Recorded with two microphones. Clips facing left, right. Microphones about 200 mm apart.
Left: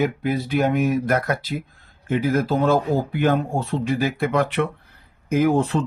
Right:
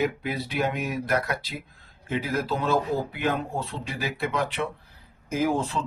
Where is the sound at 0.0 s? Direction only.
50° left (ahead or behind).